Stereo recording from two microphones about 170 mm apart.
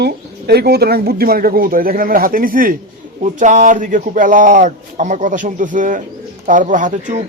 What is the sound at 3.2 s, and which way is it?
Speech, 45° right (ahead or behind).